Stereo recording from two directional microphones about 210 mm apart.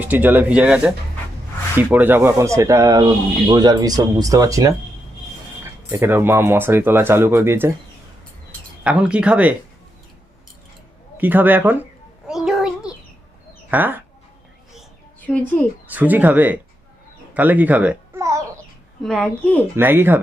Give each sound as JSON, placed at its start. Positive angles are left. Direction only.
{"t": 0.0, "sound": "speech", "side_deg": -10}
{"t": 8.8, "sound": "speech", "side_deg": -5}
{"t": 11.2, "sound": "speech", "side_deg": -10}
{"t": 12.3, "sound": "child singing", "side_deg": 0}
{"t": 13.7, "sound": "bird", "side_deg": -10}
{"t": 15.3, "sound": "speech", "side_deg": 5}
{"t": 15.9, "sound": "speech", "side_deg": -10}
{"t": 17.3, "sound": "babbling", "side_deg": -10}
{"t": 19.0, "sound": "speech", "side_deg": 5}
{"t": 19.7, "sound": "speech", "side_deg": -10}